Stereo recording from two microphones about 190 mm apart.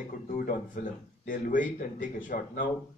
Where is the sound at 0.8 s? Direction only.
45° left (ahead or behind).